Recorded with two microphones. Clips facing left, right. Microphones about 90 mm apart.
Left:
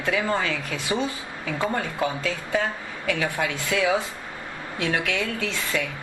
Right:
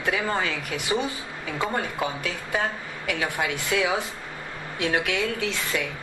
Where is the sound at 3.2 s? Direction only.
20° right (ahead or behind).